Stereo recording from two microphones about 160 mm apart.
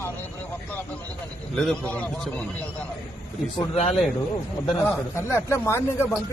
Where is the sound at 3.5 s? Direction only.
40° left (ahead or behind).